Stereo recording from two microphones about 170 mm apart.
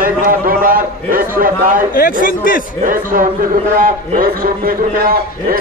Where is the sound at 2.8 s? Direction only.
55° right (ahead or behind).